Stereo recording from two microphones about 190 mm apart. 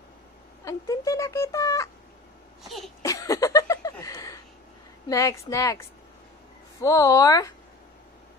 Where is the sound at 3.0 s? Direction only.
15° left (ahead or behind).